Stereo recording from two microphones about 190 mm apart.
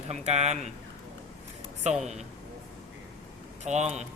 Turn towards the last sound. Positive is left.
turn(degrees=-35)  # may be behind; listen again after turning